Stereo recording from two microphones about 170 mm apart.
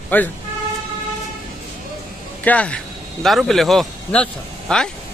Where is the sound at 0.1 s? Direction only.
10° left (ahead or behind).